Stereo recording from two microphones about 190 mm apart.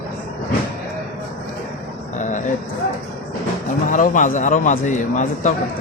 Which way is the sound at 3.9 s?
45° left (ahead or behind).